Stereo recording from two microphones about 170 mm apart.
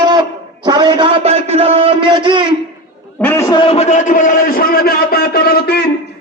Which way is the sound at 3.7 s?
40° left (ahead or behind).